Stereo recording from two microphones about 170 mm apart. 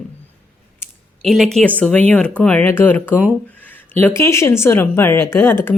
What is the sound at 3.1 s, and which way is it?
Speech, 10° right (ahead or behind).